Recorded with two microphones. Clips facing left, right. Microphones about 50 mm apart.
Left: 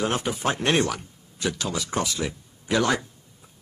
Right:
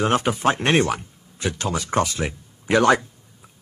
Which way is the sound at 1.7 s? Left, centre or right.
Right.